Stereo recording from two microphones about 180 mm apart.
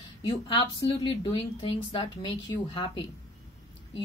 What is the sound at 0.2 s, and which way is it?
A woman's voice, 30° left (ahead or behind).